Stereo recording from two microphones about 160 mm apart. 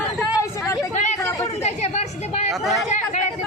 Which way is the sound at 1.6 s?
45° left (ahead or behind).